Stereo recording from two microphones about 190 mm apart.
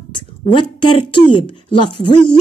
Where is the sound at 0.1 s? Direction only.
25° left (ahead or behind).